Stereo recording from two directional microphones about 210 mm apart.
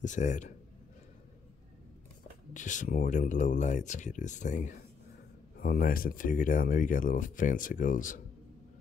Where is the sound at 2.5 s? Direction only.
35° left (ahead or behind).